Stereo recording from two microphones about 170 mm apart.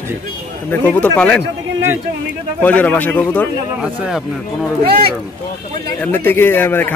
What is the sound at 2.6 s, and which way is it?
Speech, 10° left (ahead or behind).